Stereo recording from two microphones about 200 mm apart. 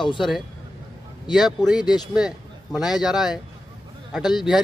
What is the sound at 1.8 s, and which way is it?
Speech, 20° left (ahead or behind).